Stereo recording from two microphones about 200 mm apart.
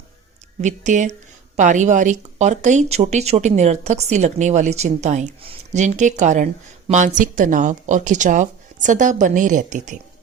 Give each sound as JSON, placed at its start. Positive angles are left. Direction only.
{"t": 0.6, "sound": "speech", "side_deg": -35}